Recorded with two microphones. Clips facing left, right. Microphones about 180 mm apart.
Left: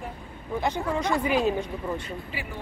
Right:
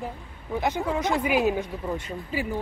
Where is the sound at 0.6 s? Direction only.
10° right (ahead or behind).